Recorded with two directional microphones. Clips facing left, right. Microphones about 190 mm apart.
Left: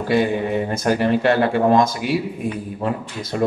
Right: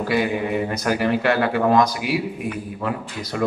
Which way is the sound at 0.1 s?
25° left (ahead or behind).